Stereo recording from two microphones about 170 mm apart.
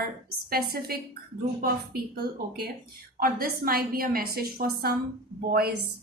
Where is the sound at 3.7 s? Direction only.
60° right (ahead or behind).